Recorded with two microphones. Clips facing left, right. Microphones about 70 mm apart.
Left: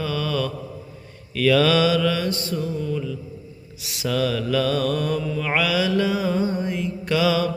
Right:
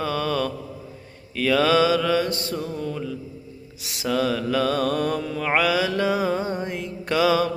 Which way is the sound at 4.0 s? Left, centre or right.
Right.